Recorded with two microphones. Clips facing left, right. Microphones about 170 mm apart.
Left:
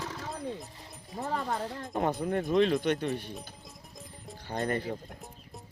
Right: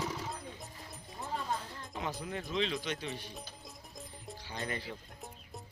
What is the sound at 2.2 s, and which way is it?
Speech, 50° left (ahead or behind).